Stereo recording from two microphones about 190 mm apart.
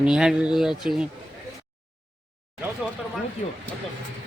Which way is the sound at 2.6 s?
5° right (ahead or behind).